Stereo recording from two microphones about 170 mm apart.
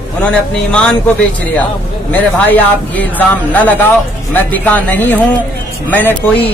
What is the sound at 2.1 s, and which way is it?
Speech, 10° left (ahead or behind).